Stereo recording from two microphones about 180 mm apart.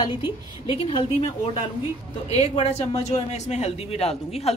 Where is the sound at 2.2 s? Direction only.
35° left (ahead or behind).